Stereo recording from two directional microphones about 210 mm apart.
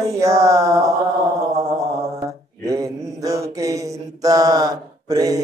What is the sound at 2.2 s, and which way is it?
Mantra, 15° right (ahead or behind).